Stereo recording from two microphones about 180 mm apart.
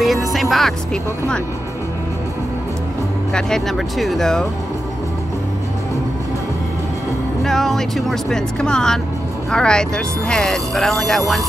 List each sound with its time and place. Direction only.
0.0 s speech: centre (ahead or behind)
3.3 s speech: 5° left (ahead or behind)
7.4 s speech: centre (ahead or behind)